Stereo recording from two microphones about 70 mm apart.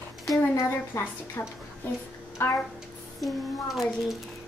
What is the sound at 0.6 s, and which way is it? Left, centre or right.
Speech, left.